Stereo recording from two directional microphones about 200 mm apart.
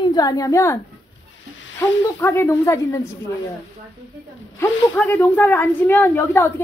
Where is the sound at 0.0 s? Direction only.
20° left (ahead or behind).